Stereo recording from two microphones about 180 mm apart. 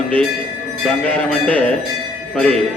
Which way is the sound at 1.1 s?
10° left (ahead or behind).